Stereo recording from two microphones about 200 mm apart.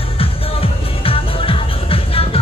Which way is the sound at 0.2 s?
30° left (ahead or behind).